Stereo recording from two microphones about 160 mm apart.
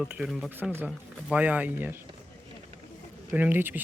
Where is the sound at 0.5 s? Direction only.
15° right (ahead or behind).